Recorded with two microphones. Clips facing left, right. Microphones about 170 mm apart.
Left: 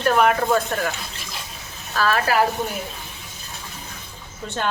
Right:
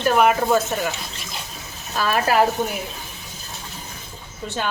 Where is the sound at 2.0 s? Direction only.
15° right (ahead or behind).